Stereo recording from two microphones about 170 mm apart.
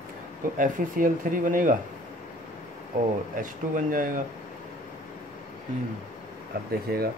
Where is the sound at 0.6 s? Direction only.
55° right (ahead or behind).